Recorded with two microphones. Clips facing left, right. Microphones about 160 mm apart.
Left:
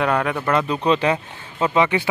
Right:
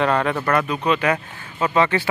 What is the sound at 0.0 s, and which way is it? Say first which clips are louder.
Speech: right 1 dB; 5° left (ahead or behind).